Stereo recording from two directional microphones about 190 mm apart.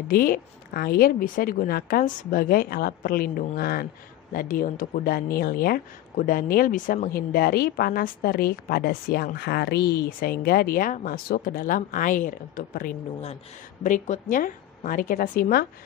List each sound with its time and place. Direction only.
0.1 s speech: 50° left (ahead or behind)